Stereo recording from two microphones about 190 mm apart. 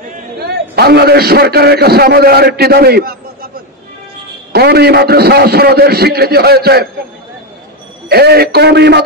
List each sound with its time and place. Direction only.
0.4 s a man's voice: 55° right (ahead or behind)
4.5 s a man's voice: 55° right (ahead or behind)
8.1 s a man's voice: 55° right (ahead or behind)